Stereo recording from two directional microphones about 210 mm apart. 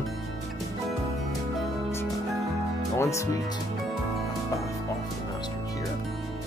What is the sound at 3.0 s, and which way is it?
Speech, 15° left (ahead or behind).